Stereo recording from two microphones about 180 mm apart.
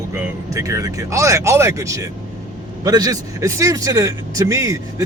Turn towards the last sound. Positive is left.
turn(degrees=-20)  # may be behind; listen again after turning